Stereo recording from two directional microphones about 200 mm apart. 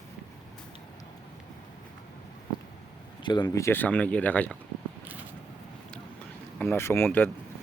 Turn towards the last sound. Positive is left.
turn(degrees=10)  # may be behind; listen again after turning